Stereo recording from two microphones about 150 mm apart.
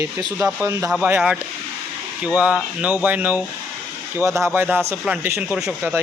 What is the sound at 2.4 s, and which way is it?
Speech, 10° right (ahead or behind).